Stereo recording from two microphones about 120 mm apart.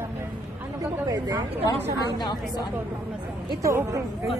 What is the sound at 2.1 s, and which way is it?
Speech, 40° left (ahead or behind).